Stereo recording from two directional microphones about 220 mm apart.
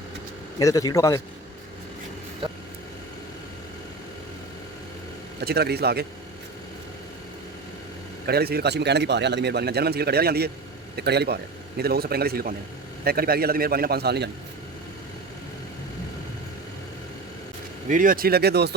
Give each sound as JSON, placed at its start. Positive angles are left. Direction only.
{"t": 0.6, "sound": "a man's voice", "side_deg": 15}
{"t": 5.4, "sound": "speech", "side_deg": -45}
{"t": 8.3, "sound": "speech", "side_deg": -45}
{"t": 17.8, "sound": "speech", "side_deg": -35}